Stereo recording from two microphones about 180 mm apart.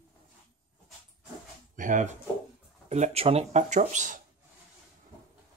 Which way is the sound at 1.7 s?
45° right (ahead or behind).